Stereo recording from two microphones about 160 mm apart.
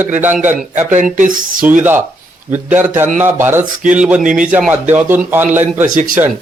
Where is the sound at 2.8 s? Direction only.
15° right (ahead or behind).